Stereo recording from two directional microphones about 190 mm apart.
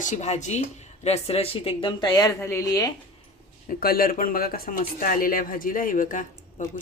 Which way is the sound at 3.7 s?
50° left (ahead or behind).